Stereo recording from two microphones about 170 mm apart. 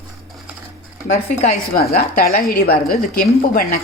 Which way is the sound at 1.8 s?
65° left (ahead or behind).